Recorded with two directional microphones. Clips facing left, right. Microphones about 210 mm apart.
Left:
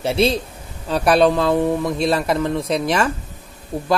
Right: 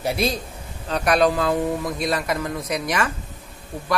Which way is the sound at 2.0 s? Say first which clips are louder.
Left 5 dB; 30° left (ahead or behind).